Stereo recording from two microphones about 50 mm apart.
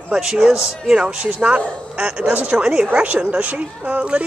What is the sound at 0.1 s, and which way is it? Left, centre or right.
Speech, centre.